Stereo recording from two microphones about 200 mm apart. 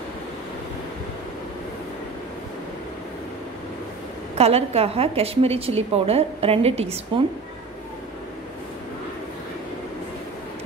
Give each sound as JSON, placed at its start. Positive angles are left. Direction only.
{"t": 4.4, "sound": "a woman's voice", "side_deg": -30}